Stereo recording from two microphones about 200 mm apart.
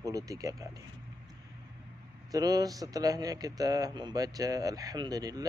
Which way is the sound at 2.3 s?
20° right (ahead or behind).